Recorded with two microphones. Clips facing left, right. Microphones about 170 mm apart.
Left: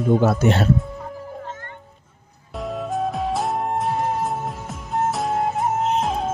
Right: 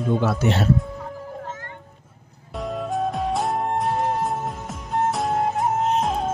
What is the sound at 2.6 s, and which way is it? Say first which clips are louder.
Music: even; centre (ahead or behind).